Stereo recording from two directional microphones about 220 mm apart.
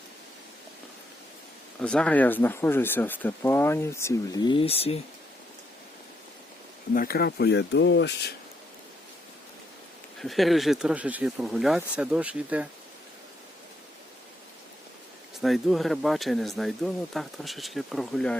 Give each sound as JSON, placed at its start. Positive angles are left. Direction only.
{"t": 1.8, "sound": "speech", "side_deg": 5}
{"t": 6.9, "sound": "speech", "side_deg": 40}
{"t": 10.2, "sound": "speech", "side_deg": 0}
{"t": 15.4, "sound": "speech", "side_deg": 0}